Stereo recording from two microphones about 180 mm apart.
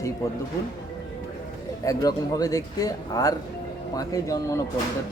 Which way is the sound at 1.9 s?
20° left (ahead or behind).